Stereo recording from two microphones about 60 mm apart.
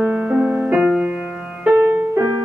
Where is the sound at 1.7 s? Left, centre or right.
Right.